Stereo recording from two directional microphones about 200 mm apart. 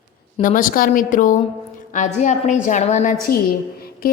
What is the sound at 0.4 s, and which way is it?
A woman's voice, 45° left (ahead or behind).